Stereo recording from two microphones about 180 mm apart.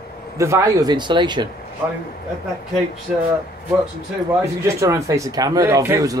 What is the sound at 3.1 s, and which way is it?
Speech, 10° right (ahead or behind).